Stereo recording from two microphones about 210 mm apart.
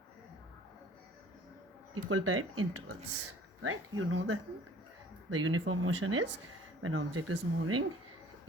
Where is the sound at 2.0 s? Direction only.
90° right; by 6.4 s 60° right (ahead or behind).